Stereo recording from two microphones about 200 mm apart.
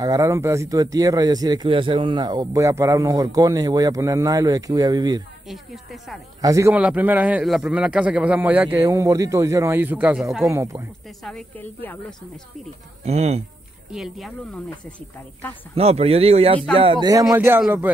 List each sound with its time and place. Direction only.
0.0 s speech: 15° right (ahead or behind)
5.5 s speech: centre (ahead or behind)
6.4 s speech: 15° right (ahead or behind)
10.5 s speech: 15° right (ahead or behind)
11.2 s speech: 5° left (ahead or behind)
13.0 s speech: 30° right (ahead or behind)
13.8 s speech: centre (ahead or behind)
15.7 s speech: 30° right (ahead or behind); by 17.8 s 5° right (ahead or behind)